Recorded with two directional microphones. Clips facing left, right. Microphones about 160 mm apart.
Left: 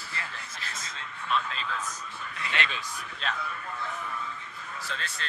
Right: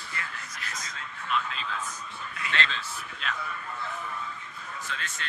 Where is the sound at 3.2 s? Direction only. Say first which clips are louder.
Left 2 dB; 35° left (ahead or behind).